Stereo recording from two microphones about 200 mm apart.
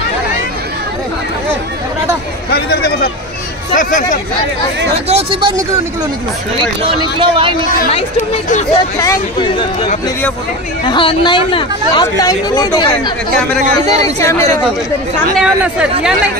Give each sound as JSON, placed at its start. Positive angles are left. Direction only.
{"t": 2.5, "sound": "a sound", "side_deg": 50}
{"t": 3.7, "sound": "speech", "side_deg": 40}
{"t": 5.0, "sound": "speech", "side_deg": -30}
{"t": 6.6, "sound": "speech", "side_deg": -25}
{"t": 7.9, "sound": "speech", "side_deg": 35}
{"t": 9.0, "sound": "speech", "side_deg": 20}
{"t": 15.3, "sound": "speech", "side_deg": -5}